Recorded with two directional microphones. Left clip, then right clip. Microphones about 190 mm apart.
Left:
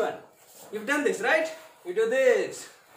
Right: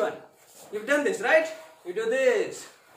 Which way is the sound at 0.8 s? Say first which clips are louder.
Right 1 dB; centre (ahead or behind).